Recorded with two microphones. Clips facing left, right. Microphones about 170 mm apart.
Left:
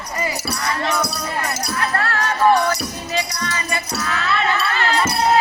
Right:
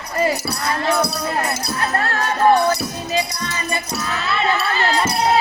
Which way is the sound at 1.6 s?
25° right (ahead or behind).